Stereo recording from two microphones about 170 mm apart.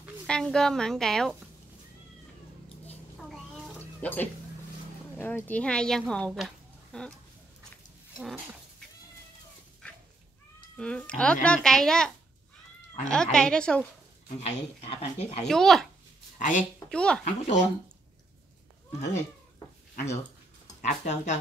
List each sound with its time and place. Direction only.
0.3 s a woman's voice: 5° left (ahead or behind)
4.0 s speech: 10° left (ahead or behind)
8.2 s dog: centre (ahead or behind)
10.8 s a woman's voice: 5° left (ahead or behind)
13.1 s a woman's voice: 5° left (ahead or behind)
14.4 s speech: 35° left (ahead or behind)
15.4 s a woman's voice: centre (ahead or behind)
16.3 s a woman's voice: 50° left (ahead or behind)
16.9 s a woman's voice: 5° left (ahead or behind)
17.2 s speech: 45° left (ahead or behind)
20.8 s speech: 45° left (ahead or behind)